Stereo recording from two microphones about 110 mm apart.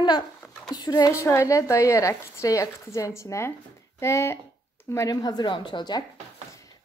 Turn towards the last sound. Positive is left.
turn(degrees=45)  # may be behind; listen again after turning